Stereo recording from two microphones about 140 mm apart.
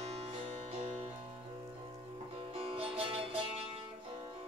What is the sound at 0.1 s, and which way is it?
Music, 45° right (ahead or behind).